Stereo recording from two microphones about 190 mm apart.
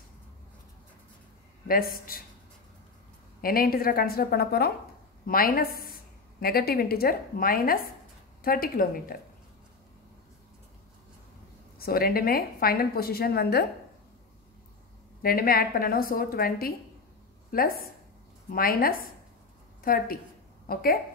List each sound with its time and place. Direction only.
1.7 s a woman's voice: 50° left (ahead or behind)
3.3 s a woman's voice: 50° left (ahead or behind)
11.8 s a woman's voice: 50° left (ahead or behind)
15.2 s a woman's voice: 50° left (ahead or behind)